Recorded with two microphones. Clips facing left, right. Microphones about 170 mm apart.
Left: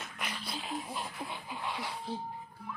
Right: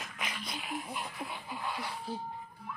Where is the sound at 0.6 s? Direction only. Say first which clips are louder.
Left 1 dB; 30° left (ahead or behind).